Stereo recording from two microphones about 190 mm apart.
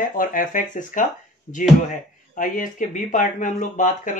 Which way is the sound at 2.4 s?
45° left (ahead or behind).